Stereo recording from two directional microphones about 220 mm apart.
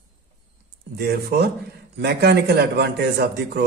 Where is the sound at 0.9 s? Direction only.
45° right (ahead or behind).